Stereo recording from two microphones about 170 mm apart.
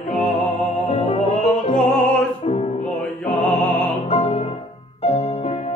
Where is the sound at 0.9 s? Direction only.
35° left (ahead or behind).